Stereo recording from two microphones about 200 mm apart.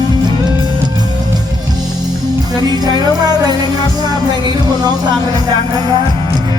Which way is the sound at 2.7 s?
20° right (ahead or behind).